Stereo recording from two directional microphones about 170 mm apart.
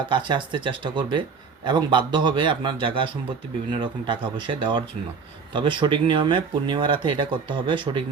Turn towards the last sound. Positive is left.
turn(degrees=-30)  # may be behind; listen again after turning